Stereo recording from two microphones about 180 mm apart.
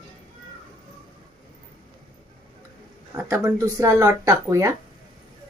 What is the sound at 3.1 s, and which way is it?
Speech, 10° right (ahead or behind).